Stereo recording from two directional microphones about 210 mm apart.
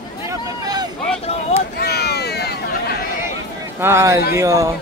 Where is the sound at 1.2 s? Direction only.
30° left (ahead or behind).